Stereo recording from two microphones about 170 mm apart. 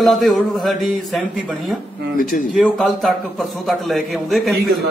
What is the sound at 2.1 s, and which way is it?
Speech, 55° left (ahead or behind).